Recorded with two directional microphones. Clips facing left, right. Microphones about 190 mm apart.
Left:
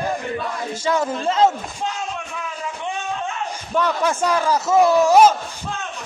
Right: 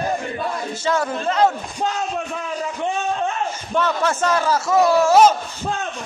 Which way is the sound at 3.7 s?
10° left (ahead or behind).